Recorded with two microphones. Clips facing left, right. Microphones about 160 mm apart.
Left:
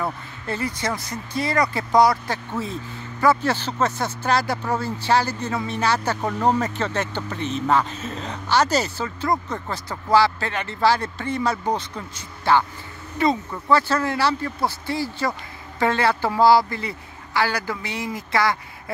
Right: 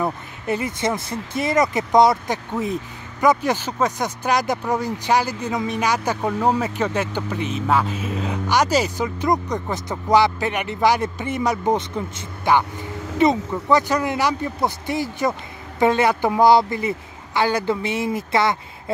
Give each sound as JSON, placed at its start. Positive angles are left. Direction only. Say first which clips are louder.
{"t": 0.0, "sound": "speech", "louder": "right 4 dB", "side_deg": -20}